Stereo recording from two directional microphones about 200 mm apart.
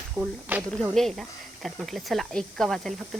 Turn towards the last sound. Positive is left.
turn(degrees=0)  # may be behind; listen again after turning